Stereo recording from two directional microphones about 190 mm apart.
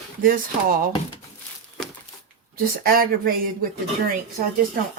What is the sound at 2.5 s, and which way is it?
Speech, 50° right (ahead or behind).